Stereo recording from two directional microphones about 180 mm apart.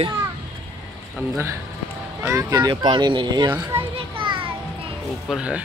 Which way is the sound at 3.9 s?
30° right (ahead or behind).